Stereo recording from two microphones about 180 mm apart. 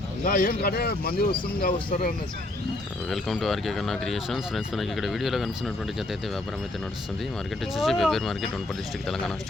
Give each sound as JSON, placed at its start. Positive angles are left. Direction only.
{"t": 0.3, "sound": "speech", "side_deg": 50}
{"t": 3.1, "sound": "speech", "side_deg": 0}
{"t": 7.8, "sound": "speech", "side_deg": 0}